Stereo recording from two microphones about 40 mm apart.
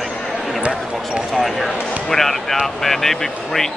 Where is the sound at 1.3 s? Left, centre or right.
Centre.